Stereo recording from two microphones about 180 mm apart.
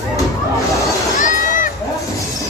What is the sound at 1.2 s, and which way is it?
Run, 45° left (ahead or behind).